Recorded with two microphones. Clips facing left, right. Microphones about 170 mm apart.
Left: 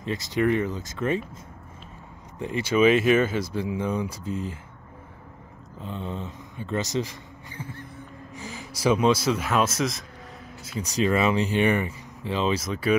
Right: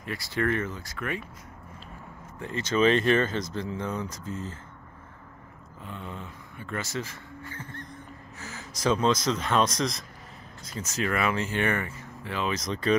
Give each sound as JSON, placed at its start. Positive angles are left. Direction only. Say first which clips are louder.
{"t": 0.0, "sound": "speech", "louder": "left 5 dB", "side_deg": 20}
{"t": 2.3, "sound": "speech", "louder": "left 4 dB", "side_deg": 15}
{"t": 5.8, "sound": "speech", "louder": "left 6 dB", "side_deg": 25}
{"t": 12.5, "sound": "speech", "louder": "left 2 dB", "side_deg": 5}